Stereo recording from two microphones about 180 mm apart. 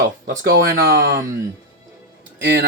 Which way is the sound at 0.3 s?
50° right (ahead or behind).